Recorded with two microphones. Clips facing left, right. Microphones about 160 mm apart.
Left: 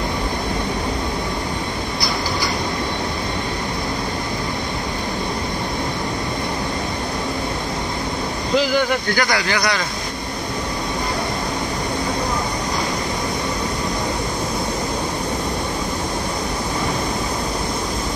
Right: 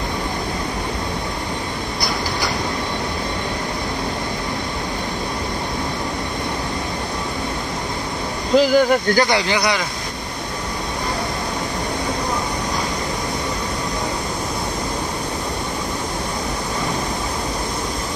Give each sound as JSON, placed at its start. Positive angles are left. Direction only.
{"t": 8.5, "sound": "speech", "side_deg": -40}
{"t": 9.2, "sound": "speech", "side_deg": -25}